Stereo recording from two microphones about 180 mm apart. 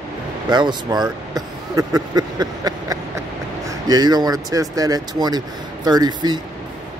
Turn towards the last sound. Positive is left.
turn(degrees=-20)  # may be behind; listen again after turning